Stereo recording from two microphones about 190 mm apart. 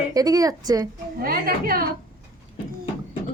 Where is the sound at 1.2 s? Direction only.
50° right (ahead or behind).